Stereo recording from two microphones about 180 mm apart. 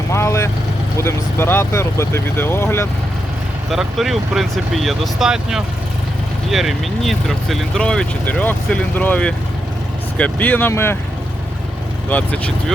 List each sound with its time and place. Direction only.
0.1 s speech: 15° left (ahead or behind)
3.7 s speech: centre (ahead or behind)
12.0 s speech: 10° left (ahead or behind)